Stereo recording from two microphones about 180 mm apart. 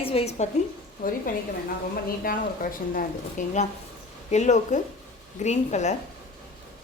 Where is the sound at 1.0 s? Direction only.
50° left (ahead or behind).